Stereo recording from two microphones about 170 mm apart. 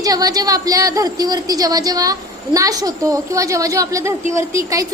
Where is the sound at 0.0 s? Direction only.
20° right (ahead or behind).